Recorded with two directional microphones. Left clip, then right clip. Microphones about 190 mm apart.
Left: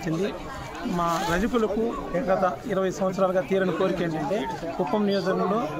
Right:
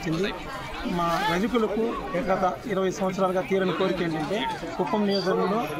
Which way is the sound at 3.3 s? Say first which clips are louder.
Left 1 dB; 35° left (ahead or behind).